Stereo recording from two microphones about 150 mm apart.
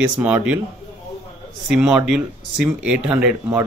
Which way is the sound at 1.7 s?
5° right (ahead or behind).